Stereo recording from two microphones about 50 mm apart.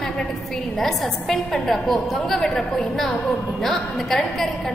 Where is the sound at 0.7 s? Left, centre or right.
Centre.